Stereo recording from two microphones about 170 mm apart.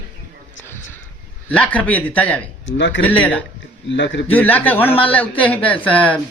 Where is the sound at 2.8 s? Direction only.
90° left.